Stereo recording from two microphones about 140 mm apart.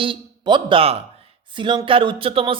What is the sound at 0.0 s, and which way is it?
A man's voice, 35° right (ahead or behind).